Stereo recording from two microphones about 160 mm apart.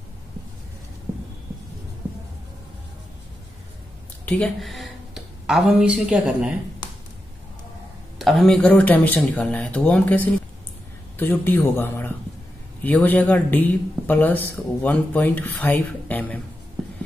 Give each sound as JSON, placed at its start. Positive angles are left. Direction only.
{"t": 4.3, "sound": "speech", "side_deg": 5}
{"t": 8.2, "sound": "speech", "side_deg": 0}